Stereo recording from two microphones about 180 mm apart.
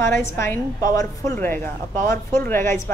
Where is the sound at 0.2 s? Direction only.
15° left (ahead or behind).